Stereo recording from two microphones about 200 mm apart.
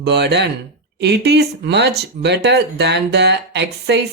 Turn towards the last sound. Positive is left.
turn(degrees=-60)  # may be behind; listen again after turning